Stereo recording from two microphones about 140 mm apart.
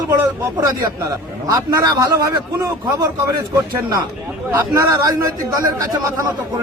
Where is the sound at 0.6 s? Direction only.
25° right (ahead or behind).